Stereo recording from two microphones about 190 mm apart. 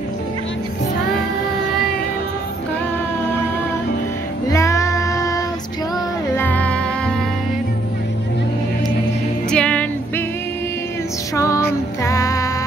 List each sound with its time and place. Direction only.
4.5 s child singing: 15° left (ahead or behind)
6.3 s music: 10° left (ahead or behind)
9.5 s music: 5° left (ahead or behind)
11.3 s music: 15° left (ahead or behind)